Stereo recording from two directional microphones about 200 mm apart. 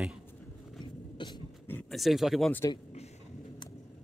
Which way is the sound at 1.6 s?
5° left (ahead or behind).